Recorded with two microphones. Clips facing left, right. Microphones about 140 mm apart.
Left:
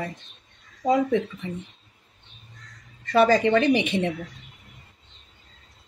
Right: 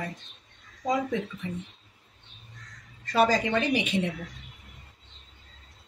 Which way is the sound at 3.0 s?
65° left (ahead or behind).